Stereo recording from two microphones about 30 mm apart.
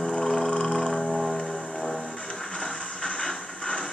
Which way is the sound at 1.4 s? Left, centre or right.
Left.